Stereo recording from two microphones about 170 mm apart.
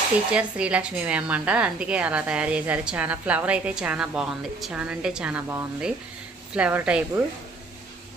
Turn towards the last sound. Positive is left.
turn(degrees=-10)  # may be behind; listen again after turning